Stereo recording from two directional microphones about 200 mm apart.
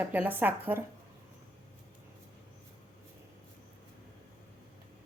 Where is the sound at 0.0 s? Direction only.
10° right (ahead or behind).